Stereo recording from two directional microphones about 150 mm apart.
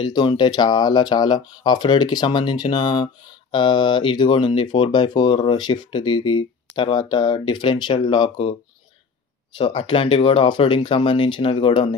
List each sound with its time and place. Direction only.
0.0 s speech: 30° left (ahead or behind)
9.6 s speech: 35° left (ahead or behind)